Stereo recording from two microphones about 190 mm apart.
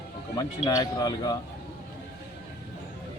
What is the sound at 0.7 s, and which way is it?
Speech, 20° left (ahead or behind).